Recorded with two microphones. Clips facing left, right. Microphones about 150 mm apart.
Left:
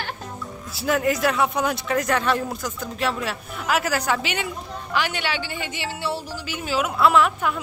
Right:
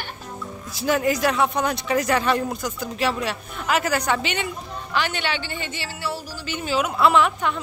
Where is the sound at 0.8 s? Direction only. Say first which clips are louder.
Even; centre (ahead or behind).